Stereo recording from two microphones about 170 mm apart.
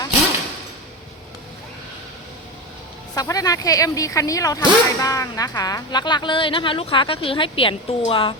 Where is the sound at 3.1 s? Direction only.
20° left (ahead or behind).